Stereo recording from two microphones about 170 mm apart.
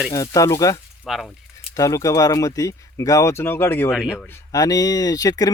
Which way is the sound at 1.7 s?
20° left (ahead or behind).